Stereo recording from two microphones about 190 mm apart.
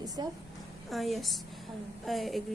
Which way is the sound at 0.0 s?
20° right (ahead or behind).